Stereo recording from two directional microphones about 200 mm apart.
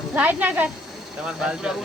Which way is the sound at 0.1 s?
10° right (ahead or behind).